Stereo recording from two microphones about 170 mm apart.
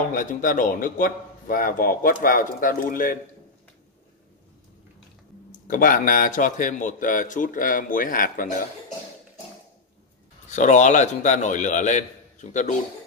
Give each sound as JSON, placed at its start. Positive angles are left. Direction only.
{"t": 0.1, "sound": "a man's voice", "side_deg": 50}
{"t": 5.7, "sound": "a man's voice", "side_deg": 50}
{"t": 10.5, "sound": "a man's voice", "side_deg": 45}